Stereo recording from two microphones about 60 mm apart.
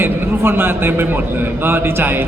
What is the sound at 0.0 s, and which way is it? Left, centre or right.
A man's voice, right.